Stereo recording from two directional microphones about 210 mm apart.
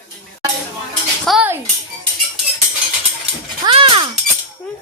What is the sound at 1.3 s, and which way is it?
Dishes, 5° right (ahead or behind).